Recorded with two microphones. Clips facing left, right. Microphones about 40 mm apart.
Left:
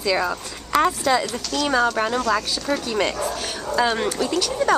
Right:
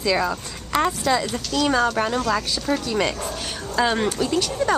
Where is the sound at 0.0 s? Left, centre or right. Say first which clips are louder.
Even; centre.